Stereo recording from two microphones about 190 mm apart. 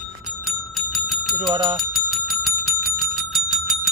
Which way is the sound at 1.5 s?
25° right (ahead or behind).